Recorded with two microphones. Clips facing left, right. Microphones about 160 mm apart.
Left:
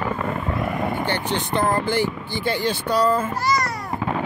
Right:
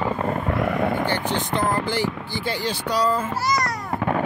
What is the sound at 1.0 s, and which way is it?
Speech, 65° left (ahead or behind).